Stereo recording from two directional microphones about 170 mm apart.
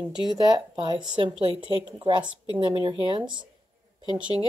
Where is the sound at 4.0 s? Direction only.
25° left (ahead or behind).